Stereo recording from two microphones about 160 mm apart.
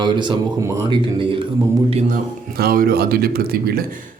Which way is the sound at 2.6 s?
65° right (ahead or behind).